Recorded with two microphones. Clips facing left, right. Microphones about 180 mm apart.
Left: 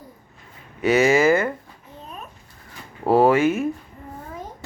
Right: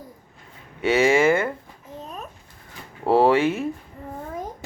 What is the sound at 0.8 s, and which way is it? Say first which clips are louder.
Speech: left 1 dB; 25° right (ahead or behind).